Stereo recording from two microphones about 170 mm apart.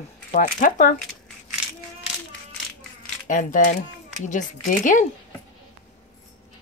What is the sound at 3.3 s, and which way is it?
Speech, 50° left (ahead or behind).